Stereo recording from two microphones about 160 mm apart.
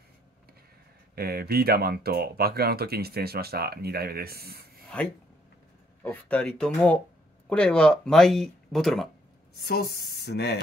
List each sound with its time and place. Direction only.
1.1 s speech: 75° right (ahead or behind)
6.0 s speech: 10° left (ahead or behind)
9.7 s speech: 80° left